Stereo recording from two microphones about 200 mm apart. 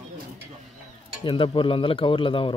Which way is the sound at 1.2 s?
25° left (ahead or behind).